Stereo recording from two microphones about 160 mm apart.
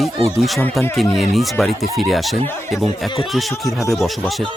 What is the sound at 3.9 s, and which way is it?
Speech, centre (ahead or behind).